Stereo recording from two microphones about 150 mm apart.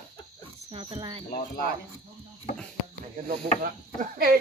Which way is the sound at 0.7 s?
35° right (ahead or behind).